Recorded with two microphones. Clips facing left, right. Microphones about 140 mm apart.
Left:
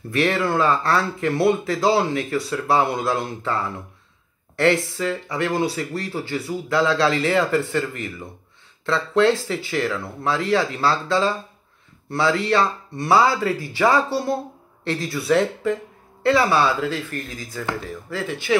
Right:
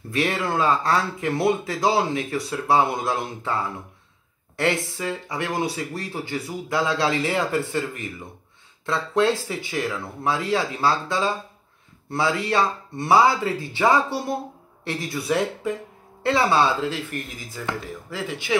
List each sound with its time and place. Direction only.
0.1 s speech: 15° right (ahead or behind)